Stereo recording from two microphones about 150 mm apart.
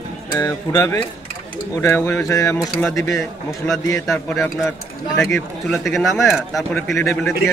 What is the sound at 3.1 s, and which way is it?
Speech, 5° left (ahead or behind).